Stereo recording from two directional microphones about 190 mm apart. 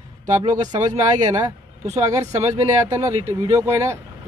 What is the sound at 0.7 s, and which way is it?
Speech, 20° right (ahead or behind).